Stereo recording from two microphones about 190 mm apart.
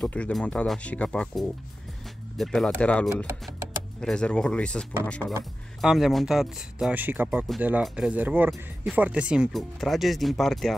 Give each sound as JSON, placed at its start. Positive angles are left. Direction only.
{"t": 0.0, "sound": "speech", "side_deg": 5}